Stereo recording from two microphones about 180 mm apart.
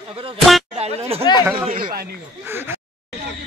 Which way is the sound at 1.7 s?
55° right (ahead or behind).